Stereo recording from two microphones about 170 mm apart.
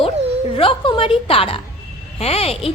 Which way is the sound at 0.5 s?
30° left (ahead or behind).